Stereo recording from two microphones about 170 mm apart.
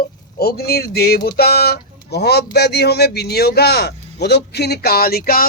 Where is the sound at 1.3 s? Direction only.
65° left (ahead or behind).